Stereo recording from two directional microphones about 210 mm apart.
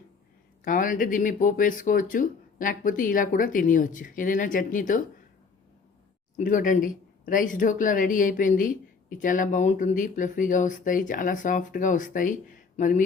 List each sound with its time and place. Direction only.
0.6 s speech: 40° left (ahead or behind)
6.3 s speech: 40° left (ahead or behind)